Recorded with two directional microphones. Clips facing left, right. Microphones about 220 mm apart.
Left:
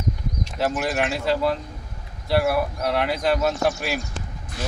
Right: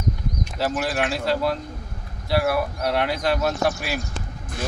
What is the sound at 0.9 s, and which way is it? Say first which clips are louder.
Speech: even; centre (ahead or behind).